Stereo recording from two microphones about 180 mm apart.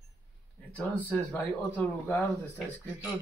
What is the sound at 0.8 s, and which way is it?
Speech, 10° left (ahead or behind).